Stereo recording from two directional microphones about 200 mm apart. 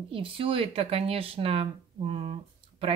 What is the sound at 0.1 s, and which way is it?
Speech, 25° right (ahead or behind).